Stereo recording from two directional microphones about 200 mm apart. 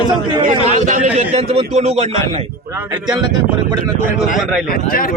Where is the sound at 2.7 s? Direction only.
15° right (ahead or behind).